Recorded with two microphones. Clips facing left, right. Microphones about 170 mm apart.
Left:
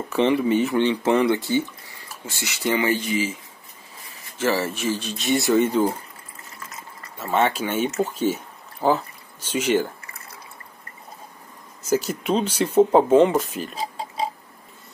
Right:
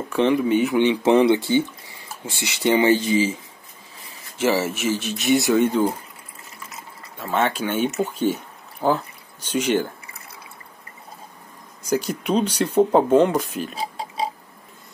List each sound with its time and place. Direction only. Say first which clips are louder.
0.3 s speech: right 2 dB; centre (ahead or behind)
0.7 s speech: right 3 dB; 15° right (ahead or behind)
4.4 s speech: right 2 dB; 10° right (ahead or behind)
7.2 s speech: left 1 dB; 5° left (ahead or behind)
11.9 s speech: even; 5° left (ahead or behind)
13.7 s oink: left 2 dB; 10° right (ahead or behind)